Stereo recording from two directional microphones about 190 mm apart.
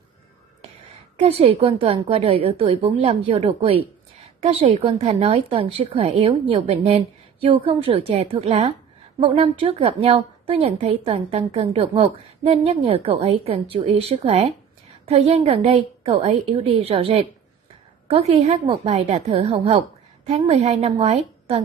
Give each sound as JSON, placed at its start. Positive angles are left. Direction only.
{"t": 1.1, "sound": "a woman's voice", "side_deg": -30}